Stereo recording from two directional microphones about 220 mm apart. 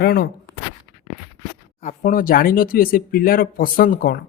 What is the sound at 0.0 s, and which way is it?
Speech, 45° left (ahead or behind).